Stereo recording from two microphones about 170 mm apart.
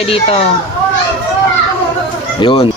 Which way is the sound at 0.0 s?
35° left (ahead or behind).